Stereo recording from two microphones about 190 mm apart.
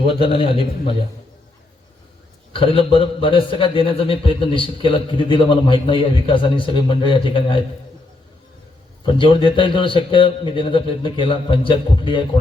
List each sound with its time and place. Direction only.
0.0 s a man's voice: 30° left (ahead or behind)
2.5 s a man's voice: 30° left (ahead or behind)
9.0 s a man's voice: 25° left (ahead or behind)